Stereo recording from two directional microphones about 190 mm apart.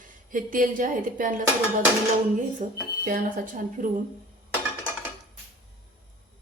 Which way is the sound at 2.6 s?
40° right (ahead or behind).